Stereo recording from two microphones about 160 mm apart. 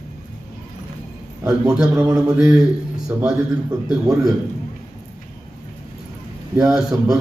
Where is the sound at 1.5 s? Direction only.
5° right (ahead or behind).